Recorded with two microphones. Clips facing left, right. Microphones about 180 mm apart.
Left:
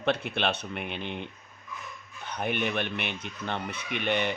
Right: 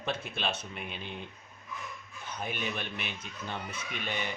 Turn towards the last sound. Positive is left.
turn(degrees=70)  # may be behind; listen again after turning